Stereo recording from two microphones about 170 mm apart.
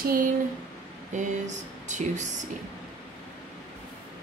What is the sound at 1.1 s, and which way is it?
Speech, 45° right (ahead or behind).